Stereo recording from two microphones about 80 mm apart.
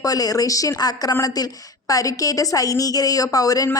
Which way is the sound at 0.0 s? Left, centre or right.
Left.